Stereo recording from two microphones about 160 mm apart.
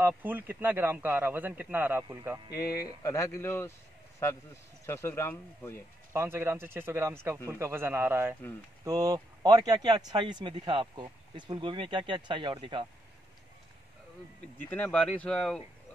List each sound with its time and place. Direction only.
0.0 s a man's voice: 15° right (ahead or behind)
2.5 s speech: 20° left (ahead or behind)
4.8 s speech: 15° left (ahead or behind)
6.1 s a man's voice: 15° right (ahead or behind)
14.6 s speech: 10° left (ahead or behind)